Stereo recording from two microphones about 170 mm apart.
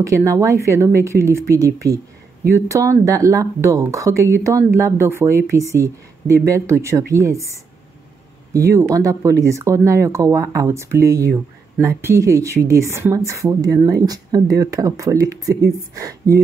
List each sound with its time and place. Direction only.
0.0 s speech: 20° right (ahead or behind)
8.5 s speech: 15° right (ahead or behind)